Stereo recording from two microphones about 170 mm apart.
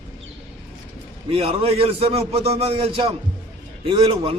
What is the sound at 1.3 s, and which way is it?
A man's voice, 35° right (ahead or behind).